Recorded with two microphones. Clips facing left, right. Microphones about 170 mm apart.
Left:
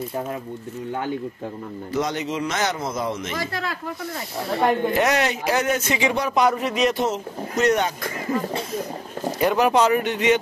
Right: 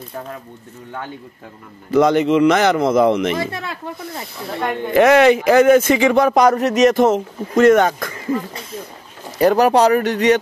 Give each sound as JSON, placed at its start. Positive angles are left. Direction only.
{"t": 1.9, "sound": "speech", "side_deg": -60}
{"t": 3.3, "sound": "speech", "side_deg": -25}
{"t": 4.9, "sound": "speech", "side_deg": -60}
{"t": 9.4, "sound": "speech", "side_deg": -40}